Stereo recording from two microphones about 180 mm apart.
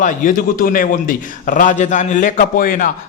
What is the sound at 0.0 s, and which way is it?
A man's voice, 50° left (ahead or behind).